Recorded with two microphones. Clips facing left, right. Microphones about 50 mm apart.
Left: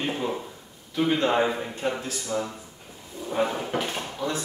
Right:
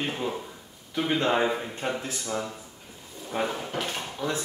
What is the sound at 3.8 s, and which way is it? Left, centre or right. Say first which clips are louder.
Speech: left 2 dB; centre.